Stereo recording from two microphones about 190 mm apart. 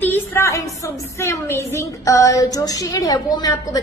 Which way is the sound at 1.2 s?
15° left (ahead or behind).